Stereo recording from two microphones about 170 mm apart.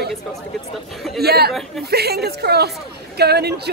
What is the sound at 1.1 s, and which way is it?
A woman's voice, 65° right (ahead or behind).